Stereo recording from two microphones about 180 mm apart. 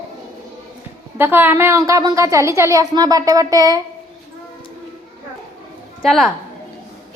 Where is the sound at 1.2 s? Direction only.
10° right (ahead or behind).